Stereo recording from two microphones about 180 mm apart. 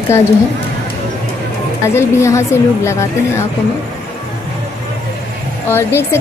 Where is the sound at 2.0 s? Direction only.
15° left (ahead or behind).